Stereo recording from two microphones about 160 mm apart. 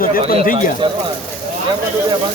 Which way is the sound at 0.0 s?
65° left (ahead or behind).